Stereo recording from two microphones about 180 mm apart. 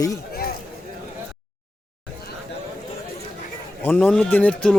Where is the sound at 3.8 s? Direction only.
10° left (ahead or behind).